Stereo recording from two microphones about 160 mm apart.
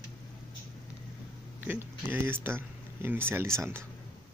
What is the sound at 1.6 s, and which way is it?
Speech, 10° right (ahead or behind).